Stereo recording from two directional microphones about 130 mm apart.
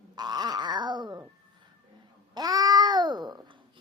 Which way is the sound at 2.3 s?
30° right (ahead or behind).